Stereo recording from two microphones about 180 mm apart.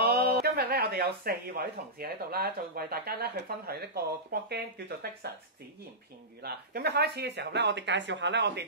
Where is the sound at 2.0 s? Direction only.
60° right (ahead or behind).